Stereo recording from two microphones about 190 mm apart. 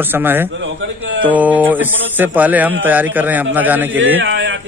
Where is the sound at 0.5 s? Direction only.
80° right.